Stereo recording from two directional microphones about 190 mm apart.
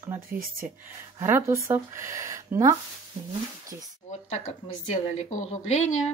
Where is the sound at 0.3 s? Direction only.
50° right (ahead or behind).